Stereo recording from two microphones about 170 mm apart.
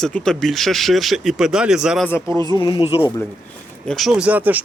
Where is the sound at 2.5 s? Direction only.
25° left (ahead or behind).